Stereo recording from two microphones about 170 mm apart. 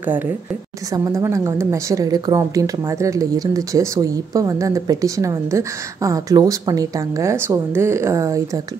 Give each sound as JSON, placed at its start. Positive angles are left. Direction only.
{"t": 0.9, "sound": "a woman's voice", "side_deg": -20}